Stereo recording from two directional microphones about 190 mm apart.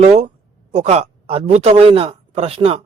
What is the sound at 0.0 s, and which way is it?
Speech, 35° right (ahead or behind).